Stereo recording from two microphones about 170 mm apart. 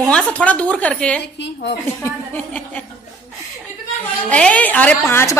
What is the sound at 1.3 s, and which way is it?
Speech, 90° left.